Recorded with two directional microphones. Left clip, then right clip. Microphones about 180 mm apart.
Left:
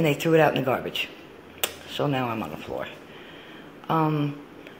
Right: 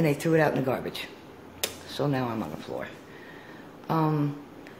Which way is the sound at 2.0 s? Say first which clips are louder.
Left 3 dB; 5° right (ahead or behind).